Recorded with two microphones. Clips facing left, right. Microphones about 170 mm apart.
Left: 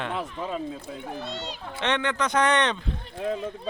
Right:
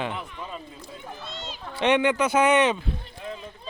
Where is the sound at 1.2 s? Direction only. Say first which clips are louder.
Left 4 dB; 65° left (ahead or behind).